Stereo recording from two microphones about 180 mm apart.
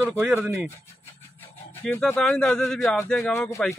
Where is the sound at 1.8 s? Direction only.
5° left (ahead or behind).